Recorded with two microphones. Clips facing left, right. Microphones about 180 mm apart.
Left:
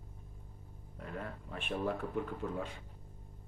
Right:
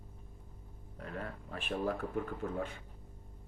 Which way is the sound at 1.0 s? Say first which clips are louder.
Right 1 dB; 40° right (ahead or behind).